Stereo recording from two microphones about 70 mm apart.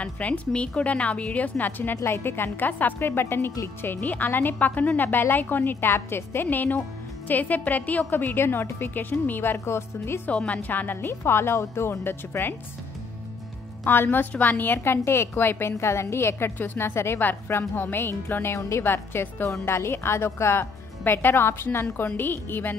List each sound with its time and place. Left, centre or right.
0.0 s speech: centre; by 10.2 s left
10.3 s a woman's voice: centre
10.7 s speech: left
11.1 s speech: left
13.8 s speech: left